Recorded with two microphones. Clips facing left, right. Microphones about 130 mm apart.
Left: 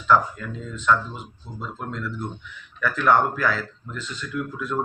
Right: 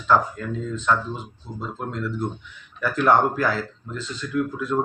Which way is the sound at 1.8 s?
25° right (ahead or behind).